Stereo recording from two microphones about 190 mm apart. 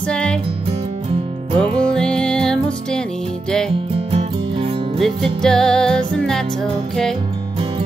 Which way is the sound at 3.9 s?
30° right (ahead or behind).